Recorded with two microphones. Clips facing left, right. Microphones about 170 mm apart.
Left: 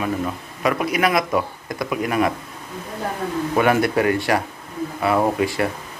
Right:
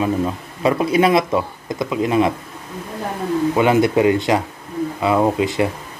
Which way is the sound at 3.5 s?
20° right (ahead or behind).